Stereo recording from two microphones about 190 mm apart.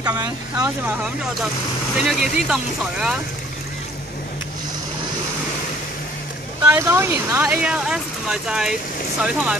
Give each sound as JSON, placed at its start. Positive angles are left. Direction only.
{"t": 0.0, "sound": "speech", "side_deg": -20}
{"t": 2.0, "sound": "speech", "side_deg": 0}
{"t": 6.6, "sound": "speech", "side_deg": -15}